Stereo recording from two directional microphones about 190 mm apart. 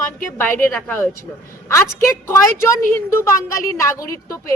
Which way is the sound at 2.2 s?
15° left (ahead or behind).